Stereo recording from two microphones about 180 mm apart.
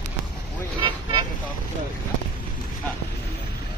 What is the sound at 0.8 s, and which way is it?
Vehicle, 25° right (ahead or behind).